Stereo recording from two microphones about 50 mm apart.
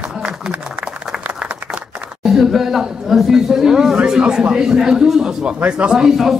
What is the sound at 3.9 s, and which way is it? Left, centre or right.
A man's voice, centre.